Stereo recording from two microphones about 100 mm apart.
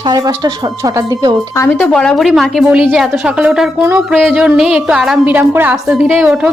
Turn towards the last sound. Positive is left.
turn(degrees=-10)  # may be behind; listen again after turning